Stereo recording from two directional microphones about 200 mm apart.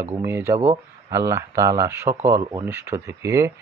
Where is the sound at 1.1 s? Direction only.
15° right (ahead or behind).